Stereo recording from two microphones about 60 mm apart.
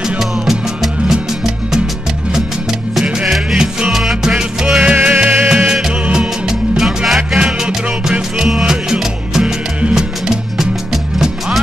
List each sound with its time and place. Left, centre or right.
1.0 s music: centre
3.0 s music: centre
6.8 s music: centre